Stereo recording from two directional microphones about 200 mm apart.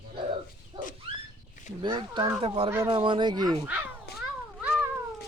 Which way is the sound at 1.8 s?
25° right (ahead or behind).